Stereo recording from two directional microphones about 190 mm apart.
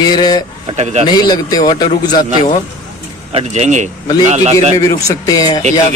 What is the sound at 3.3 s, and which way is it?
A man's voice, 35° right (ahead or behind).